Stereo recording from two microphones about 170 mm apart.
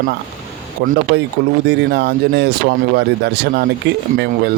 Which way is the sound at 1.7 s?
90° right.